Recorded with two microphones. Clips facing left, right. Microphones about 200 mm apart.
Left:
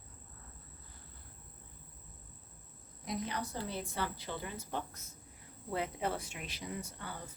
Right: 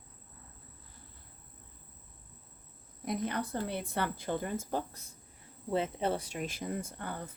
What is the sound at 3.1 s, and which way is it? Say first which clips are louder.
A woman's voice: right 5 dB; 55° right (ahead or behind).